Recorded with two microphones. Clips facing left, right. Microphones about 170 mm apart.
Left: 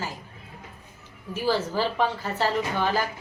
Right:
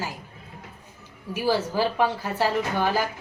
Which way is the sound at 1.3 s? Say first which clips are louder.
Right 1 dB; 10° right (ahead or behind).